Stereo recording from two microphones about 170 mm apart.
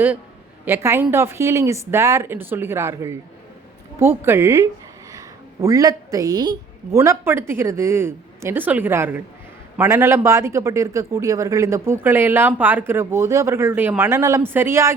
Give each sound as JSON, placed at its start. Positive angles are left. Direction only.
{"t": 0.6, "sound": "a woman's voice", "side_deg": -15}